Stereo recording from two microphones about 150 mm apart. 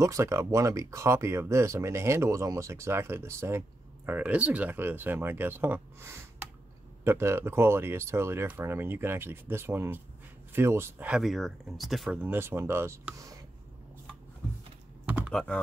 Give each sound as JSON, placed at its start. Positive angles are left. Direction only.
{"t": 0.0, "sound": "speech", "side_deg": -20}
{"t": 11.1, "sound": "speech", "side_deg": -5}
{"t": 15.0, "sound": "computer keyboard", "side_deg": -10}
{"t": 15.3, "sound": "speech", "side_deg": 10}